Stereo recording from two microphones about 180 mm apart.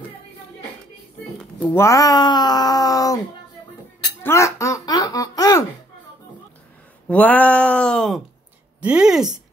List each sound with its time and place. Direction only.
1.6 s speech: 15° left (ahead or behind)
4.2 s music: 15° left (ahead or behind)
7.1 s speech: 10° left (ahead or behind)